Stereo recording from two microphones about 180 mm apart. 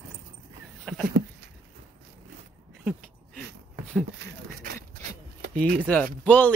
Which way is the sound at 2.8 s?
5° right (ahead or behind).